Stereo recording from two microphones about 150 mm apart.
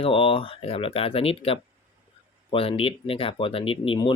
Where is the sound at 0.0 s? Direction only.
35° left (ahead or behind).